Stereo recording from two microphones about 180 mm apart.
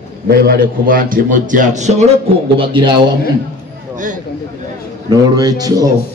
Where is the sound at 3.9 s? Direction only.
45° right (ahead or behind).